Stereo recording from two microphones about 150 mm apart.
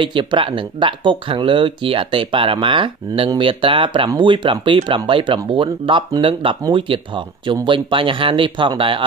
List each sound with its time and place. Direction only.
0.0 s speech: 30° right (ahead or behind)